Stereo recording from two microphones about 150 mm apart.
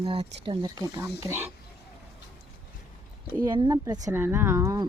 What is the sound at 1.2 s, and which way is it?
Speech, 15° right (ahead or behind).